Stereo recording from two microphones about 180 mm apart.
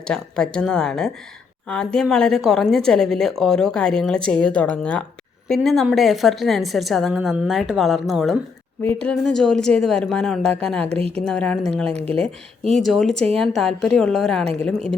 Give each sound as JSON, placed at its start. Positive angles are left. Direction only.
{"t": 0.0, "sound": "a woman's voice", "side_deg": 5}
{"t": 8.8, "sound": "a woman's voice", "side_deg": 10}
{"t": 10.8, "sound": "a woman's voice", "side_deg": -35}
{"t": 11.2, "sound": "a woman's voice", "side_deg": 5}
{"t": 12.0, "sound": "a woman's voice", "side_deg": -35}
{"t": 12.6, "sound": "a woman's voice", "side_deg": 0}